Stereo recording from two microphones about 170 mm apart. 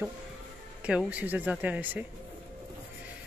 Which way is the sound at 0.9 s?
5° right (ahead or behind).